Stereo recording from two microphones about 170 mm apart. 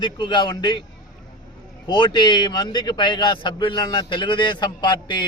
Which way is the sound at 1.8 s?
25° left (ahead or behind).